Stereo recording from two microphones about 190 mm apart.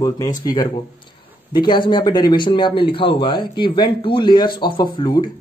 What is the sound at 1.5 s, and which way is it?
Speech, 25° left (ahead or behind).